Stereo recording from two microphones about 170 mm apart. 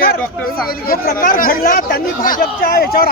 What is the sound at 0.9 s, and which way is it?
Speech, 55° left (ahead or behind).